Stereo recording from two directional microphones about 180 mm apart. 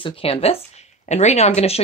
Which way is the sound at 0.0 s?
30° left (ahead or behind).